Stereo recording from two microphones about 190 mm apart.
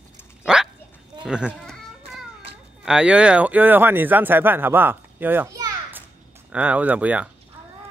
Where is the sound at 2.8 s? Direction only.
5° right (ahead or behind).